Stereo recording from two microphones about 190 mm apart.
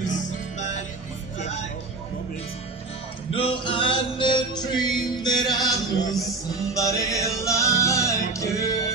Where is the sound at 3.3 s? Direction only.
30° left (ahead or behind).